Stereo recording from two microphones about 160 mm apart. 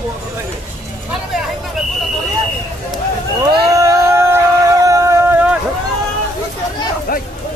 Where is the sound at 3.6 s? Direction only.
20° right (ahead or behind).